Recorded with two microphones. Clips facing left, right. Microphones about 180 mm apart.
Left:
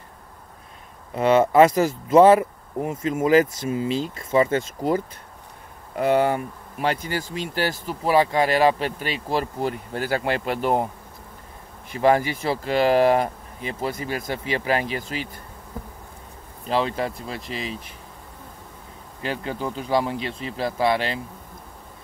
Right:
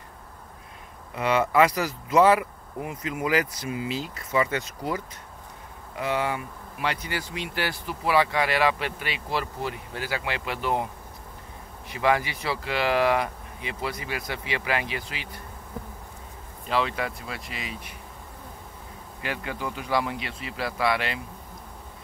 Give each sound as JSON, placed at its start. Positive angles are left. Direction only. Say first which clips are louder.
{"t": 1.1, "sound": "speech", "louder": "left 6 dB", "side_deg": 25}
{"t": 3.6, "sound": "speech", "louder": "left 6 dB", "side_deg": 35}
{"t": 4.4, "sound": "speech", "louder": "left 6 dB", "side_deg": 45}
{"t": 11.9, "sound": "speech", "louder": "left 5 dB", "side_deg": 45}
{"t": 16.6, "sound": "speech", "louder": "left 3 dB", "side_deg": 35}
{"t": 19.2, "sound": "speech", "louder": "left 4 dB", "side_deg": 30}